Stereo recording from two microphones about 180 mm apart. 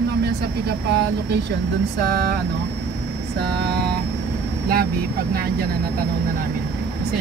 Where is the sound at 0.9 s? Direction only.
65° right (ahead or behind).